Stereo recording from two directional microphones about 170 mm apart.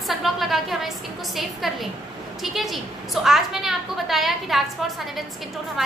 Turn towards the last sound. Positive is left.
turn(degrees=0)  # may be behind; listen again after turning